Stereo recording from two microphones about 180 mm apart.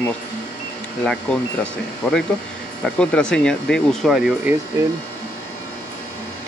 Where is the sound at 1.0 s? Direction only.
5° left (ahead or behind).